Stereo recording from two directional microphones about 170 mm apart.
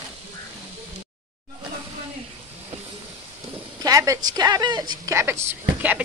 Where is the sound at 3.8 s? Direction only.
20° right (ahead or behind).